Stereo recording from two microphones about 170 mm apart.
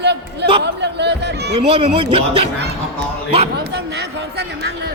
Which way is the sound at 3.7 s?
80° right.